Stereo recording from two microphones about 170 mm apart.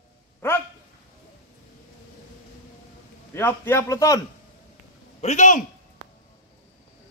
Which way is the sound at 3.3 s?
15° left (ahead or behind).